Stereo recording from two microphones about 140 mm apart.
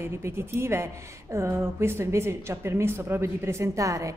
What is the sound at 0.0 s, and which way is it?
A woman's voice, 15° right (ahead or behind).